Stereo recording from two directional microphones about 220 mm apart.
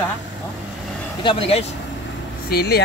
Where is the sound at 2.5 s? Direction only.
45° left (ahead or behind).